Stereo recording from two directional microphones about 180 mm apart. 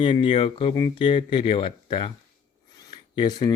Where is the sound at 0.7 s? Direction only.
20° left (ahead or behind).